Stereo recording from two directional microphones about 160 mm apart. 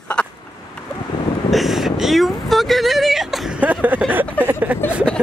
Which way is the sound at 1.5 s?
Centre (ahead or behind).